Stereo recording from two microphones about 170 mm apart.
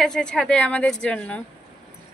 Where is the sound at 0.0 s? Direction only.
5° left (ahead or behind).